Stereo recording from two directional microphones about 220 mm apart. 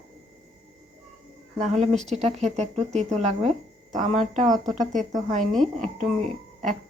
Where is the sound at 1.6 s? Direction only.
30° right (ahead or behind).